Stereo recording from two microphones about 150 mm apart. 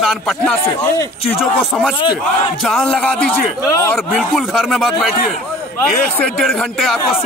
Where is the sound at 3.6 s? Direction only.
20° left (ahead or behind).